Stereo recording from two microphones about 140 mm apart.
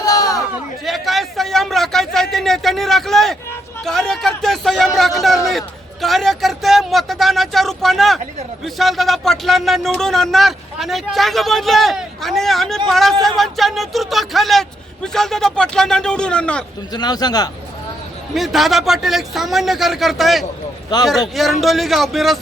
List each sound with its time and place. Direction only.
0.0 s a sound: 25° left (ahead or behind)
0.9 s a sound: centre (ahead or behind)
3.8 s speech: 5° left (ahead or behind)
16.9 s a man's voice: 30° left (ahead or behind)
18.3 s speech: centre (ahead or behind)
20.9 s a man's voice: 30° left (ahead or behind)
21.3 s speech: centre (ahead or behind)